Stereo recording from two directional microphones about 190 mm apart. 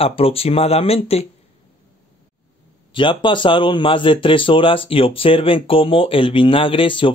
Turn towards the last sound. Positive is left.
turn(degrees=25)  # may be behind; listen again after turning